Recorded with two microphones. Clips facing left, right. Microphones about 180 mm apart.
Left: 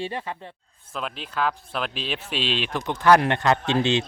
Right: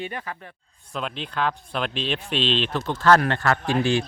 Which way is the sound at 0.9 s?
Centre (ahead or behind).